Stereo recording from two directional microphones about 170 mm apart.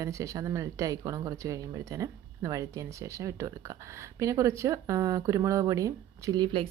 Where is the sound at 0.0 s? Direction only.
20° right (ahead or behind).